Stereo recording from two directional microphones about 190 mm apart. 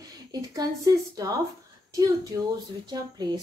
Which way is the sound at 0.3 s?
20° right (ahead or behind).